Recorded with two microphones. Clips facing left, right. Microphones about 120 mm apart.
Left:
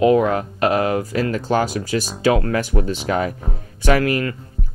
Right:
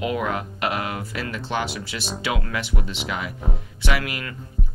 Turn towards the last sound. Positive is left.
turn(degrees=40)  # may be behind; listen again after turning